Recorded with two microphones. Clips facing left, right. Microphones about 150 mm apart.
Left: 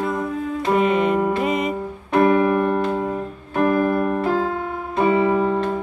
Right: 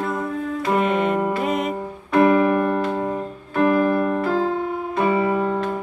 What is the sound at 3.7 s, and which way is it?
Keyboard, centre (ahead or behind).